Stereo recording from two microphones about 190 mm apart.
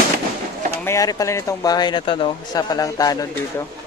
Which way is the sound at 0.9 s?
20° left (ahead or behind).